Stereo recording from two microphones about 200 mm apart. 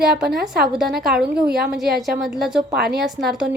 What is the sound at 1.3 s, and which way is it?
Speech, 50° right (ahead or behind).